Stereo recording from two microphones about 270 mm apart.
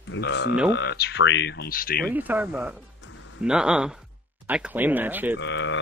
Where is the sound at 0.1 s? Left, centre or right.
Left.